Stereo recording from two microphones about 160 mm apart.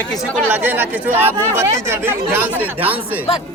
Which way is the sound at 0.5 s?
10° right (ahead or behind).